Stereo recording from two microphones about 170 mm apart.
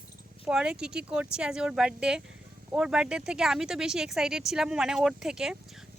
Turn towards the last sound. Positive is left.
turn(degrees=-5)  # may be behind; listen again after turning